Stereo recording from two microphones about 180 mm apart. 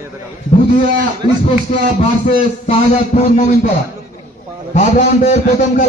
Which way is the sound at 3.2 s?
45° left (ahead or behind).